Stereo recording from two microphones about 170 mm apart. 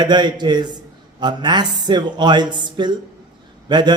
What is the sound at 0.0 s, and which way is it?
A man's voice, 25° right (ahead or behind).